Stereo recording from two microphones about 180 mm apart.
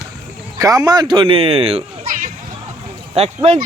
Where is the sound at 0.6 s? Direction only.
20° right (ahead or behind).